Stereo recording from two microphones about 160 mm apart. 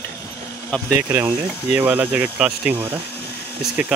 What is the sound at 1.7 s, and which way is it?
Speech, 10° right (ahead or behind).